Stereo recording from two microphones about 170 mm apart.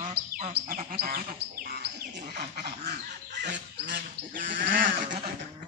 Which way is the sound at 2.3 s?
65° right (ahead or behind).